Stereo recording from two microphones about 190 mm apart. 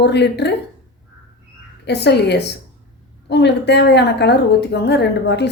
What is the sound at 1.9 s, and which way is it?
A woman's voice, 60° left (ahead or behind).